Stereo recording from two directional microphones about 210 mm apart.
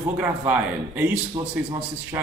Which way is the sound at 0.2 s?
10° right (ahead or behind).